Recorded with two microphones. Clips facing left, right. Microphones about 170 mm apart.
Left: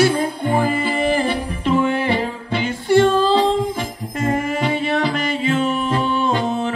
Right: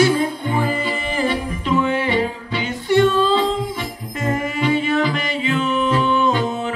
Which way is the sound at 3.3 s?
40° left (ahead or behind).